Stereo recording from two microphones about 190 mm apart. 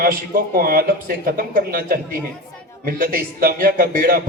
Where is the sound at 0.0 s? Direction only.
50° right (ahead or behind).